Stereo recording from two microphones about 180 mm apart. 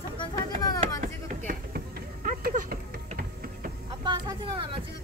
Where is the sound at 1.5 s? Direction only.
50° right (ahead or behind).